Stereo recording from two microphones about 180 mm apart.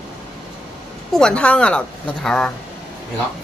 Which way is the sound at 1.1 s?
5° left (ahead or behind).